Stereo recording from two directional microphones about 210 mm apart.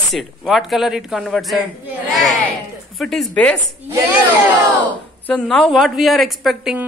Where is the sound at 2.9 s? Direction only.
Centre (ahead or behind).